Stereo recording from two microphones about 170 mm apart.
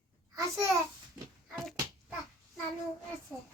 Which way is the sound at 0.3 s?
20° right (ahead or behind).